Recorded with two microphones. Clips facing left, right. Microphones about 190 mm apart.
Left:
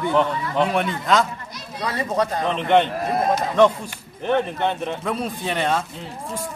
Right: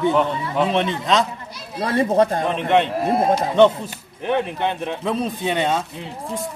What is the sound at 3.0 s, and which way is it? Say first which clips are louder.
Speech: right 3 dB; 25° right (ahead or behind).